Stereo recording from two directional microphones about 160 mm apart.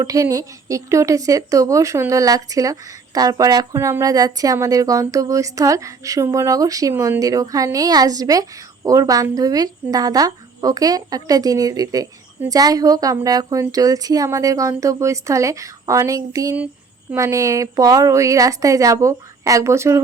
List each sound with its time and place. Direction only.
0.0 s speech: 20° right (ahead or behind)